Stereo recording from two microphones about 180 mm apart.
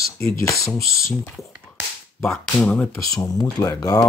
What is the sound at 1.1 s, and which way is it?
Speech, 5° left (ahead or behind).